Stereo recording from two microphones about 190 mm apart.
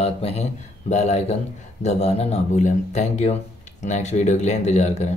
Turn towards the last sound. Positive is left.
turn(degrees=35)  # may be behind; listen again after turning